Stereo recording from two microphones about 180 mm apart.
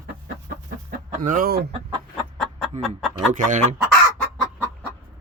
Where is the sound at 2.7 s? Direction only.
40° right (ahead or behind).